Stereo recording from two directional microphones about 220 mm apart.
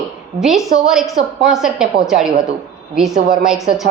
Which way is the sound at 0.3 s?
Centre (ahead or behind).